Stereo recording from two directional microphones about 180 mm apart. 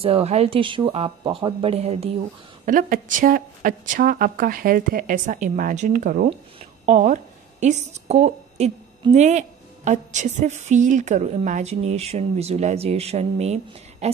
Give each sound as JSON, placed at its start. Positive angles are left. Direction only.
{"t": 0.0, "sound": "a woman's voice", "side_deg": -35}
{"t": 2.6, "sound": "a woman's voice", "side_deg": -45}